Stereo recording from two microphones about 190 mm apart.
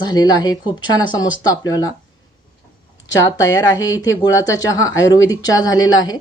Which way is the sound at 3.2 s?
20° left (ahead or behind).